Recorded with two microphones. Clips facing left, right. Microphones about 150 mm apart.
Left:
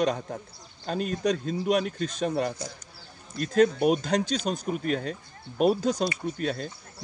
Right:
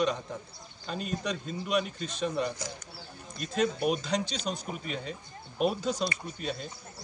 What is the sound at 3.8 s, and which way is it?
Speech, 50° left (ahead or behind).